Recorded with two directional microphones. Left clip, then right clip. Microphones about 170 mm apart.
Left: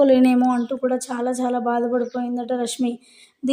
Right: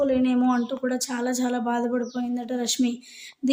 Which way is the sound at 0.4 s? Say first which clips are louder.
Left 4 dB; 5° left (ahead or behind).